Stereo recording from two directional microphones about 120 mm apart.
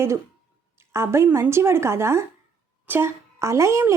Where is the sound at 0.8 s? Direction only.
20° right (ahead or behind).